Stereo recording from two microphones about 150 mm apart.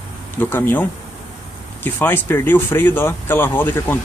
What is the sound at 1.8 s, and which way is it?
Speech, 15° left (ahead or behind).